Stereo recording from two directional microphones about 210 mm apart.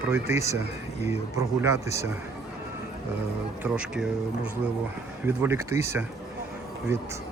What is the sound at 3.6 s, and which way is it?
Speech, 5° right (ahead or behind).